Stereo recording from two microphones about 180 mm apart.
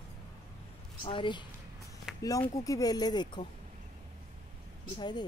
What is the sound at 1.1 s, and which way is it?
A woman's voice, 25° left (ahead or behind).